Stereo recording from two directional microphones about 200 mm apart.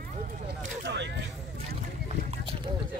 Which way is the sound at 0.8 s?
60° right (ahead or behind).